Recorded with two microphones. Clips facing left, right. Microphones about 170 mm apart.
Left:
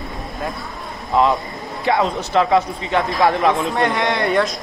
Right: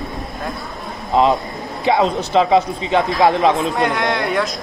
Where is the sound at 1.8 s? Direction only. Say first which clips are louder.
Right 2 dB; 20° right (ahead or behind).